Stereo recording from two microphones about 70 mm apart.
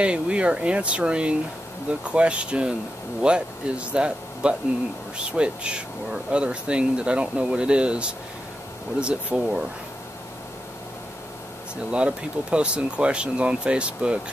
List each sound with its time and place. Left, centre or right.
0.0 s speech: centre
11.9 s speech: centre